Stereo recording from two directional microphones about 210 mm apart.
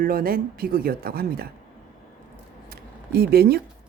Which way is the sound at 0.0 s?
45° right (ahead or behind).